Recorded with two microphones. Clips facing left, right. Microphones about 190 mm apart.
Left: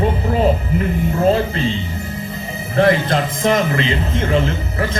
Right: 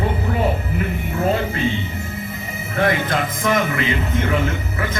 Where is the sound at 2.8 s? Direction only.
30° left (ahead or behind).